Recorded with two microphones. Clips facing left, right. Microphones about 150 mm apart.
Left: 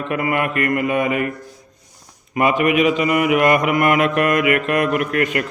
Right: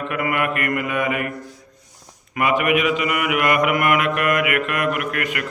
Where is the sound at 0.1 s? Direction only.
30° left (ahead or behind).